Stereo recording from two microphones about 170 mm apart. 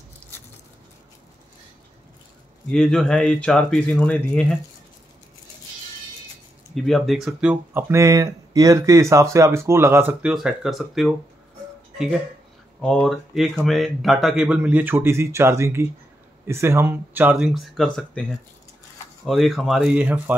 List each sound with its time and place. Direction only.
2.7 s speech: centre (ahead or behind)
6.7 s speech: centre (ahead or behind)
7.9 s speech: 20° right (ahead or behind); by 11.1 s centre (ahead or behind)
12.8 s speech: 5° left (ahead or behind)
19.2 s speech: centre (ahead or behind)